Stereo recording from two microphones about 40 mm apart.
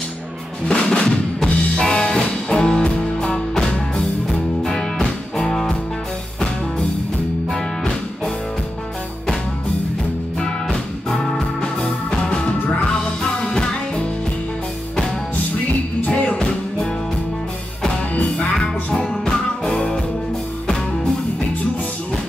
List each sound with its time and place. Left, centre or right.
0.7 s music: centre
10.4 s music: centre
16.2 s music: left
18.1 s music: left
18.9 s music: centre